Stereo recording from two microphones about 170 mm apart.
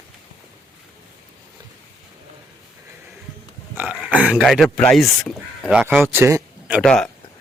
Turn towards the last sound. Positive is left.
turn(degrees=5)  # may be behind; listen again after turning